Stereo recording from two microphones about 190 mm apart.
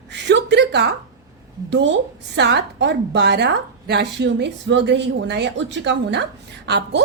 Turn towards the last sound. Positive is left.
turn(degrees=-65)  # may be behind; listen again after turning